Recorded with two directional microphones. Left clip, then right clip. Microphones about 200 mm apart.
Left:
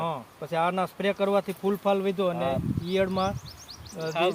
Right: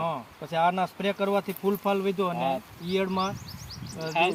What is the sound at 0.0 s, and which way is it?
Speech, 10° left (ahead or behind).